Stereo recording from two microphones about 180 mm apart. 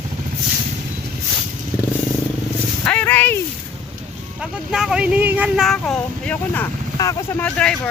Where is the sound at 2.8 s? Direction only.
5° left (ahead or behind).